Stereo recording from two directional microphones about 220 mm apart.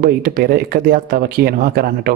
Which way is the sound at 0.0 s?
45° right (ahead or behind).